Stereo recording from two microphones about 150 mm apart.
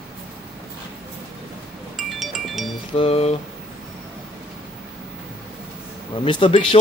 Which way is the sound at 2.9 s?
40° left (ahead or behind).